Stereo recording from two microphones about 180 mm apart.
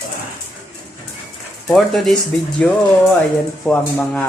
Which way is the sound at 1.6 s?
Centre (ahead or behind).